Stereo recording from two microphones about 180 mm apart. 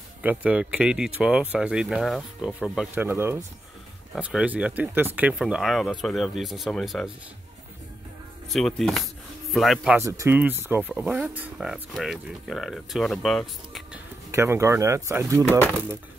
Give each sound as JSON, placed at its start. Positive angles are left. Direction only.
{"t": 0.2, "sound": "speech", "side_deg": -10}
{"t": 8.5, "sound": "speech", "side_deg": 0}
{"t": 9.9, "sound": "speech", "side_deg": -15}
{"t": 14.3, "sound": "speech", "side_deg": -15}